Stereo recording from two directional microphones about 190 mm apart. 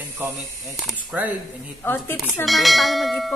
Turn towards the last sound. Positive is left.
turn(degrees=0)  # may be behind; listen again after turning